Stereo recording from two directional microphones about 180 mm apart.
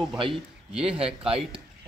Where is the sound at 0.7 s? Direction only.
5° right (ahead or behind).